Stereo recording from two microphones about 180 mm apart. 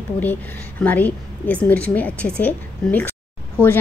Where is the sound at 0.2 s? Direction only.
10° left (ahead or behind).